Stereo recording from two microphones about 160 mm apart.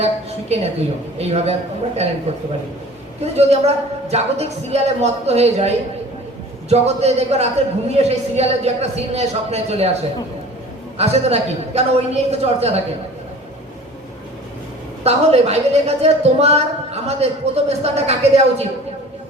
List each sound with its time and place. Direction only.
0.0 s a woman's voice: 40° right (ahead or behind)
3.3 s a woman's voice: 40° right (ahead or behind)
15.0 s a woman's voice: 40° right (ahead or behind)